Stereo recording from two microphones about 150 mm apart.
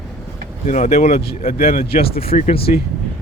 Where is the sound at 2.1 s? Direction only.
40° left (ahead or behind).